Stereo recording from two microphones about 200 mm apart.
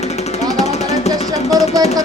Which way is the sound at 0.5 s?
35° left (ahead or behind).